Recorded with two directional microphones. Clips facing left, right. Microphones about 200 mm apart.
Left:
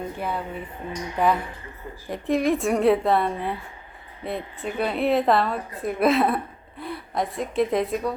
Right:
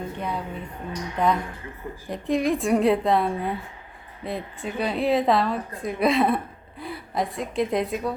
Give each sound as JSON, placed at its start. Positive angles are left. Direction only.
{"t": 0.2, "sound": "a woman's voice", "side_deg": 5}